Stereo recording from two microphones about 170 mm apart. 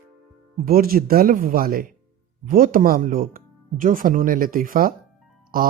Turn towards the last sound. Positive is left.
turn(degrees=-60)  # may be behind; listen again after turning